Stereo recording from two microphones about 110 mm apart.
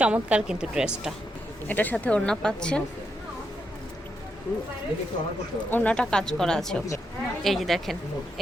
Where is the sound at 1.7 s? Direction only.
15° left (ahead or behind).